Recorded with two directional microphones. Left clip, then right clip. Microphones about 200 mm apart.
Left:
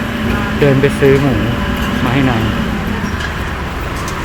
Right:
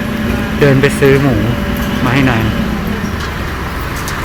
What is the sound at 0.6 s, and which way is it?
Speech, centre (ahead or behind).